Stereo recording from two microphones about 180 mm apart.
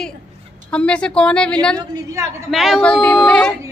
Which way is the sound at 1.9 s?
20° right (ahead or behind).